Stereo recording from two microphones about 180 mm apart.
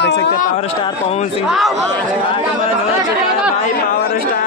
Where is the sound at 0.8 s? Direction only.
35° left (ahead or behind).